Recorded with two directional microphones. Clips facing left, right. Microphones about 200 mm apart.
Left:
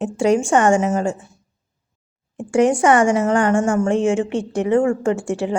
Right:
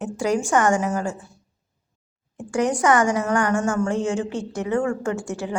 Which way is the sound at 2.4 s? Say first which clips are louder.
Left 6 dB; 25° left (ahead or behind).